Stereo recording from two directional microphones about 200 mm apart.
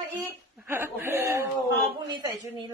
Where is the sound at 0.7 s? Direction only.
10° right (ahead or behind).